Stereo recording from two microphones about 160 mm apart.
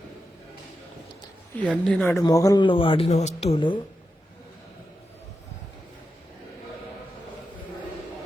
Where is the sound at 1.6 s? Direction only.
5° left (ahead or behind).